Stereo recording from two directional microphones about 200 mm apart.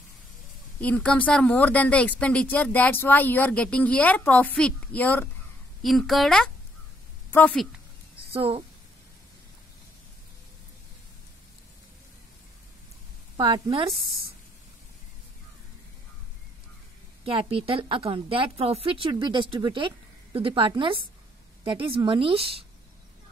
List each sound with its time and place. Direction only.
0.7 s a woman's voice: 5° left (ahead or behind)
8.3 s a woman's voice: 30° right (ahead or behind)
13.4 s a woman's voice: 25° right (ahead or behind)
17.2 s a woman's voice: 30° right (ahead or behind)